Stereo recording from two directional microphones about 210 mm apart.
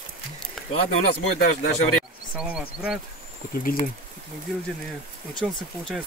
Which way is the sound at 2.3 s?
5° right (ahead or behind).